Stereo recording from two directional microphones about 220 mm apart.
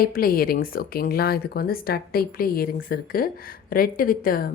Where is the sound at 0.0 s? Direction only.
40° left (ahead or behind).